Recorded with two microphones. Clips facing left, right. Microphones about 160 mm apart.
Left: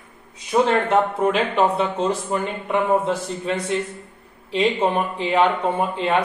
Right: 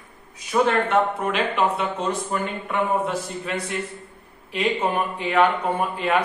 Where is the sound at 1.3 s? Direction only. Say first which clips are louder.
Left 3 dB; 30° left (ahead or behind).